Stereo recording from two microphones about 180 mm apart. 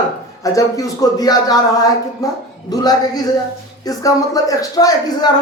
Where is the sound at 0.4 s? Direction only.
20° left (ahead or behind).